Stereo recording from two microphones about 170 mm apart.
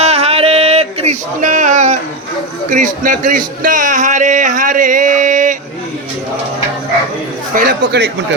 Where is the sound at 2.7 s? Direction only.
50° right (ahead or behind).